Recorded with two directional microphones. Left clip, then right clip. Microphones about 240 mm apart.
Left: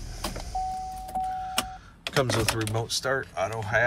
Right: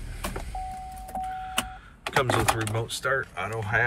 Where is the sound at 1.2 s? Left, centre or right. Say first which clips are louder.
Even; centre.